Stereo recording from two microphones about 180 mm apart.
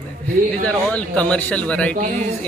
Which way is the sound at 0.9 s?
5° left (ahead or behind).